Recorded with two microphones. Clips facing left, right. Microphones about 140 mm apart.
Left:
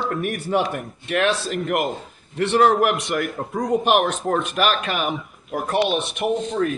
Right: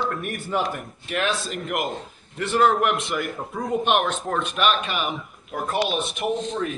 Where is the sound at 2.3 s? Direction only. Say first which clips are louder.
Left 5 dB; 70° left (ahead or behind).